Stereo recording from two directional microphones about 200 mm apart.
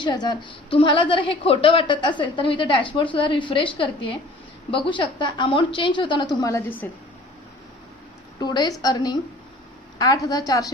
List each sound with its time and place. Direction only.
0.0 s a woman's voice: 20° left (ahead or behind)
8.4 s a woman's voice: 20° left (ahead or behind)
10.2 s a woman's voice: 20° left (ahead or behind)